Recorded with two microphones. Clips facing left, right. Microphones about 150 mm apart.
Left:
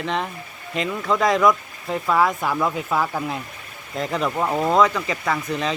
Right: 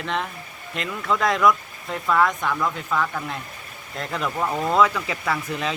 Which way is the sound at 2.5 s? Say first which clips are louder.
Left 2 dB; 20° left (ahead or behind).